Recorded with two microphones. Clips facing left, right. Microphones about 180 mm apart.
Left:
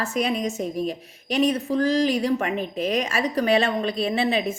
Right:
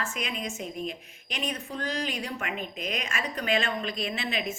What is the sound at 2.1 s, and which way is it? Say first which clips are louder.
A woman's voice: left 11 dB; 35° left (ahead or behind).